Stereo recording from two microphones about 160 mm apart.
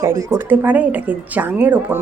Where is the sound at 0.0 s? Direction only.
20° right (ahead or behind).